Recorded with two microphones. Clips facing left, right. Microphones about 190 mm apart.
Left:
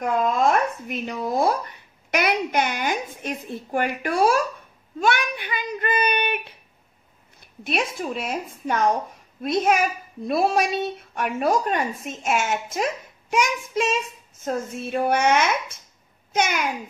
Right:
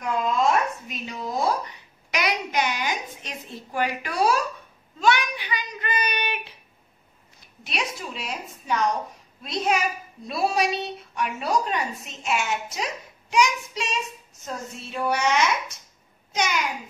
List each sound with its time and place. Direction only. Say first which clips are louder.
0.0 s a woman's voice: left 2 dB; 55° left (ahead or behind)